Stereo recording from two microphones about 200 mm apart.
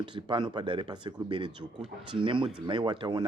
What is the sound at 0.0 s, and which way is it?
Speech, 25° right (ahead or behind).